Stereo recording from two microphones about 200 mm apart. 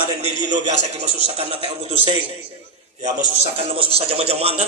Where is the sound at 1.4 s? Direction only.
30° right (ahead or behind).